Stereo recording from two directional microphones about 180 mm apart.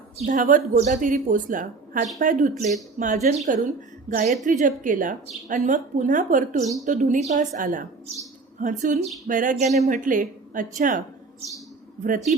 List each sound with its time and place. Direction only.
0.2 s speech: 45° right (ahead or behind)